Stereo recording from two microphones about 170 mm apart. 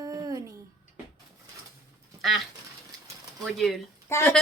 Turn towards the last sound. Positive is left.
turn(degrees=15)  # may be behind; listen again after turning